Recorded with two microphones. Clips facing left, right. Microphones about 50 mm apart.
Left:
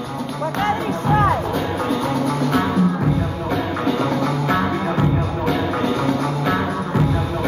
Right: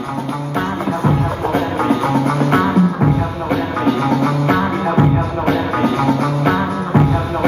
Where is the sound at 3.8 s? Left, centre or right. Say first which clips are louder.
Right 5 dB; right.